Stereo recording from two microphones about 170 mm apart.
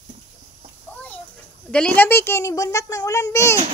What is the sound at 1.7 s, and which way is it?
A child's voice, 5° left (ahead or behind).